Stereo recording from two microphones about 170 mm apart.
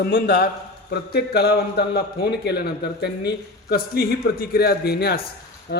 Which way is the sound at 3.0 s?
75° left (ahead or behind).